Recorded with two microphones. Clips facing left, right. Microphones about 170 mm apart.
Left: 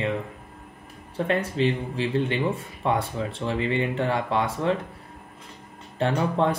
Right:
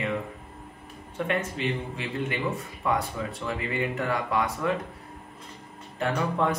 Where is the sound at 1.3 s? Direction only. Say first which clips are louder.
Left 5 dB; 30° left (ahead or behind).